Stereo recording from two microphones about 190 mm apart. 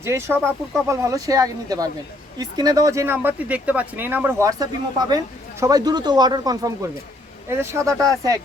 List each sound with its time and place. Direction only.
0.0 s speech: 15° right (ahead or behind)